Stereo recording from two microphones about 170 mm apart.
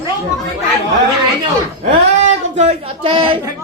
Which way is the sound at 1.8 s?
45° right (ahead or behind).